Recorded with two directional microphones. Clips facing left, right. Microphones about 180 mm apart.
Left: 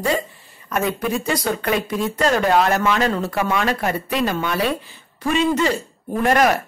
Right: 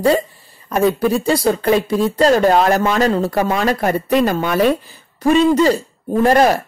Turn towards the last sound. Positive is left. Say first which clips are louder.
# right 4 dB
turn(degrees=-30)  # may be behind; listen again after turning